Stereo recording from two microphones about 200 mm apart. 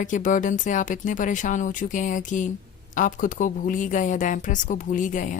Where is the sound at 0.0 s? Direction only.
40° left (ahead or behind).